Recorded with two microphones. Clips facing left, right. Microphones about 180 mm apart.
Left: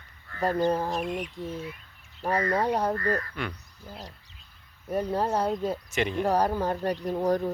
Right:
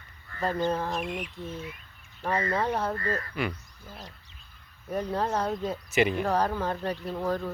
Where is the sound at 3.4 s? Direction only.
5° right (ahead or behind).